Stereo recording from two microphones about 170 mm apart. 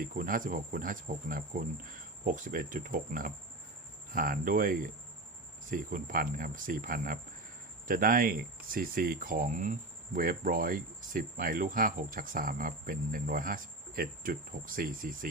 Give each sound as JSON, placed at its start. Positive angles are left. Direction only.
{"t": 0.0, "sound": "speech", "side_deg": -55}